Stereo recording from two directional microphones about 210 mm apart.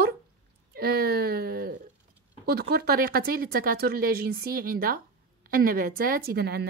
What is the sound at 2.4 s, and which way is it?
A woman's voice, 50° right (ahead or behind).